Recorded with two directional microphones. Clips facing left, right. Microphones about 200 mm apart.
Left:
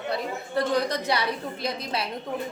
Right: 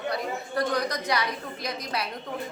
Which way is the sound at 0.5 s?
30° left (ahead or behind).